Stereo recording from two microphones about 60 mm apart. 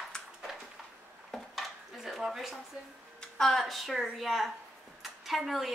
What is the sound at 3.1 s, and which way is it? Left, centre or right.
A woman's voice, centre.